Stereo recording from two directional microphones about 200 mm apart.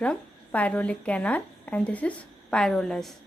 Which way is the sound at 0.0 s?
5° left (ahead or behind).